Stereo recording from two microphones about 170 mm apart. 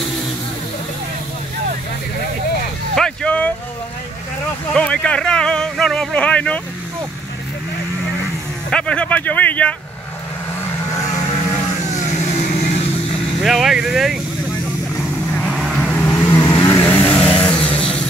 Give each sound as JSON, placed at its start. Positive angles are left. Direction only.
{"t": 3.0, "sound": "vehicle", "side_deg": 5}
{"t": 4.7, "sound": "a sound", "side_deg": 5}
{"t": 8.6, "sound": "speech", "side_deg": 5}
{"t": 12.4, "sound": "vehicle", "side_deg": 45}
{"t": 13.4, "sound": "speech", "side_deg": 0}
{"t": 15.3, "sound": "vehicle", "side_deg": 0}